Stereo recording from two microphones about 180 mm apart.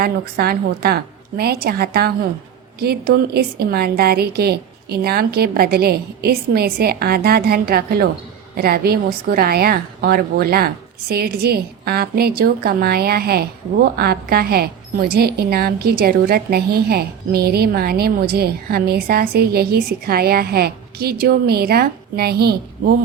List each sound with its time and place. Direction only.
0.0 s a woman's voice: 60° right (ahead or behind)